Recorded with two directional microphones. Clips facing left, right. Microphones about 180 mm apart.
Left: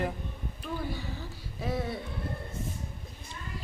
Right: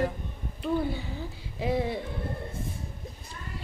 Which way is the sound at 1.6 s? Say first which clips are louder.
Right 5 dB; 25° right (ahead or behind).